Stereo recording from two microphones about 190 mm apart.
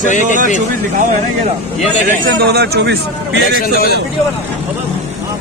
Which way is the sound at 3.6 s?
50° left (ahead or behind).